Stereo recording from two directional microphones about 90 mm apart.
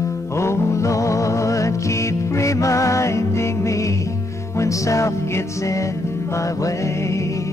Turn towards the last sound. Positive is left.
turn(degrees=35)  # may be behind; listen again after turning